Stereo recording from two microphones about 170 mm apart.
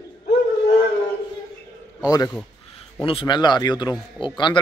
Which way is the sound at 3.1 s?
30° left (ahead or behind).